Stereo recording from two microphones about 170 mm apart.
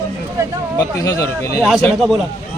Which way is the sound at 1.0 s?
20° left (ahead or behind).